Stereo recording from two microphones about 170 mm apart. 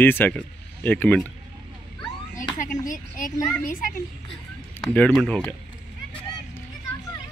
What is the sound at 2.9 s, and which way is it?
A child's voice, 50° left (ahead or behind).